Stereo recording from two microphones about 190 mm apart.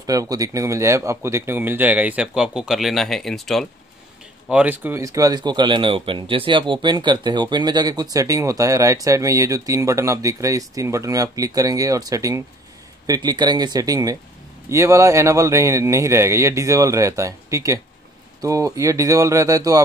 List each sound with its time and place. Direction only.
0.0 s speech: 20° right (ahead or behind)